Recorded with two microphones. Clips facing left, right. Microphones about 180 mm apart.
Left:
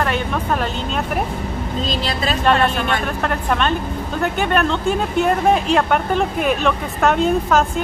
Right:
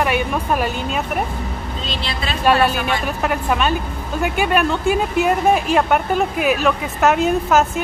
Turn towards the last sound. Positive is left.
turn(degrees=-5)  # may be behind; listen again after turning